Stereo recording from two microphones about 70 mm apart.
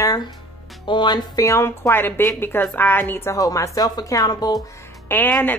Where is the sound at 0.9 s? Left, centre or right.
Left.